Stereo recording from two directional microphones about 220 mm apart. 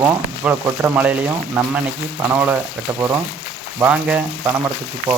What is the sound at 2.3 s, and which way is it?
Speech, 10° right (ahead or behind).